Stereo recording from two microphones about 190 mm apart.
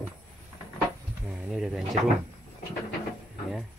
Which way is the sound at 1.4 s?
Centre (ahead or behind).